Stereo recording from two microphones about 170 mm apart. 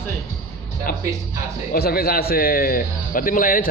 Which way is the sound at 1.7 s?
60° left (ahead or behind).